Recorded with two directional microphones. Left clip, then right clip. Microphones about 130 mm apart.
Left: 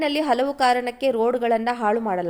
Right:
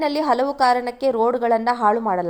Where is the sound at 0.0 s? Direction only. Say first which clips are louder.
Right 2 dB; 10° left (ahead or behind).